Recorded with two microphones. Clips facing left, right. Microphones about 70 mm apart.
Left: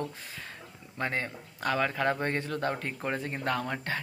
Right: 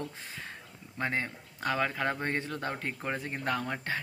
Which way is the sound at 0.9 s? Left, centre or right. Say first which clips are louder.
Even; centre.